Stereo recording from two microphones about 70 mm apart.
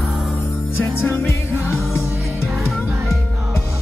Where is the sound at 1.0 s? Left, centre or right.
Left.